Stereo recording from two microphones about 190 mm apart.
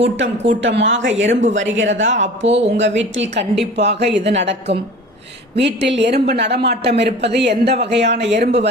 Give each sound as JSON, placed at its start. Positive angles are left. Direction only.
{"t": 0.0, "sound": "speech", "side_deg": -75}
{"t": 2.5, "sound": "speech", "side_deg": -35}
{"t": 2.7, "sound": "speech", "side_deg": -75}
{"t": 3.6, "sound": "speech", "side_deg": -60}